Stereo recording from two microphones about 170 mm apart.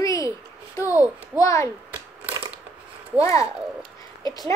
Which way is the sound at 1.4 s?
15° left (ahead or behind).